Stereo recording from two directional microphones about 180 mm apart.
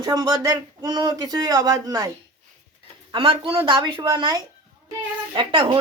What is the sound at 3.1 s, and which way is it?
Speech, 30° right (ahead or behind).